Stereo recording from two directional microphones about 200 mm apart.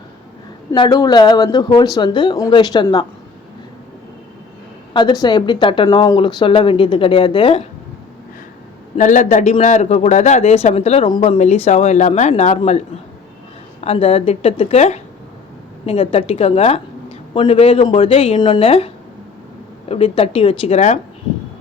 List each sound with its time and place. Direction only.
0.7 s speech: 20° left (ahead or behind)
4.9 s speech: 20° left (ahead or behind)
9.0 s a man's voice: 40° left (ahead or behind)
13.8 s a man's voice: 30° left (ahead or behind)
19.9 s speech: 30° left (ahead or behind)